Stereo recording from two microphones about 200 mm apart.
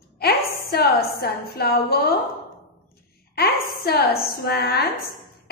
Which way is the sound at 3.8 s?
50° left (ahead or behind).